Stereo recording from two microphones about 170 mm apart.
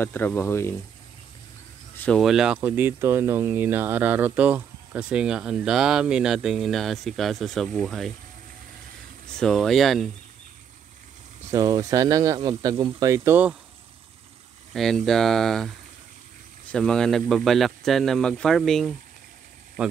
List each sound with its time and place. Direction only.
0.0 s speech: 10° left (ahead or behind)
2.0 s speech: 5° left (ahead or behind)
9.4 s speech: centre (ahead or behind)
11.5 s speech: 20° right (ahead or behind)
14.7 s speech: centre (ahead or behind)
16.7 s speech: 5° left (ahead or behind)